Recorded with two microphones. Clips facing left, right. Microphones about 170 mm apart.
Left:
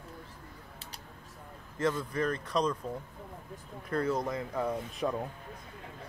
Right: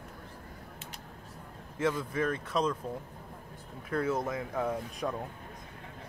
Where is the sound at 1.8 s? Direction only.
10° right (ahead or behind).